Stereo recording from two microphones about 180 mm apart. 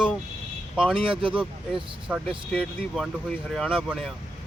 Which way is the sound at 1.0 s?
30° right (ahead or behind).